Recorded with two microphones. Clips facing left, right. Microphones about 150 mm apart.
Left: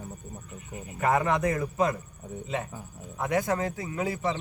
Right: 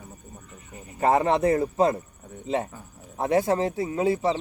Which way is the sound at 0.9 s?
30° right (ahead or behind).